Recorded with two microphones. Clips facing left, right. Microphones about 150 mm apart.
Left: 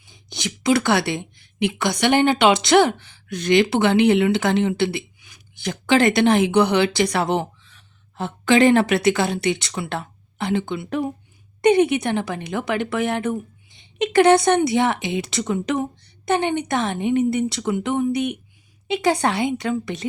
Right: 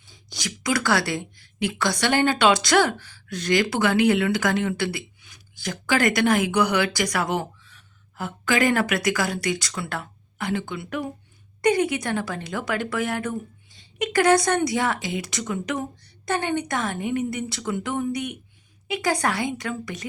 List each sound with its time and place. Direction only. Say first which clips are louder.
0.1 s a woman's voice: left 4 dB; 25° left (ahead or behind)